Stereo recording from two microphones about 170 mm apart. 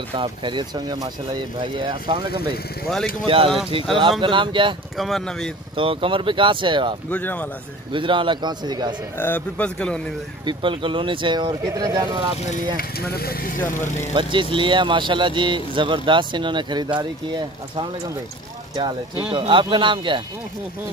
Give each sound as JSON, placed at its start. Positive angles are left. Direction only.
{"t": 0.1, "sound": "speech", "side_deg": -30}
{"t": 4.9, "sound": "speech", "side_deg": 0}
{"t": 5.8, "sound": "speech", "side_deg": -30}
{"t": 7.1, "sound": "speech", "side_deg": 10}
{"t": 7.9, "sound": "speech", "side_deg": -30}
{"t": 9.2, "sound": "speech", "side_deg": 10}
{"t": 10.4, "sound": "speech", "side_deg": -30}
{"t": 12.7, "sound": "speech", "side_deg": 65}
{"t": 13.7, "sound": "speech", "side_deg": 50}
{"t": 14.1, "sound": "speech", "side_deg": -30}